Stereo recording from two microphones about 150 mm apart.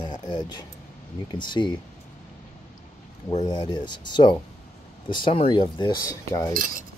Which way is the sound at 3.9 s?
30° left (ahead or behind).